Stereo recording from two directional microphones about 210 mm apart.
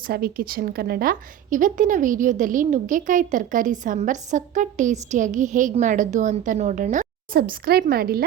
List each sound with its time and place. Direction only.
0.1 s a woman's voice: 45° right (ahead or behind)